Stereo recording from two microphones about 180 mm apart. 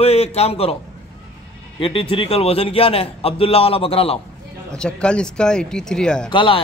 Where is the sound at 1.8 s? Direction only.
30° left (ahead or behind).